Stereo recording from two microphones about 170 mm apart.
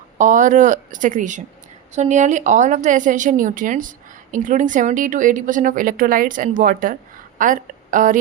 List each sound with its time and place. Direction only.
0.2 s a woman's voice: 50° right (ahead or behind)